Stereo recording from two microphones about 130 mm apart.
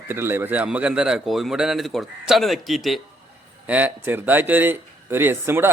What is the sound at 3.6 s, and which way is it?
A man's voice, 10° right (ahead or behind).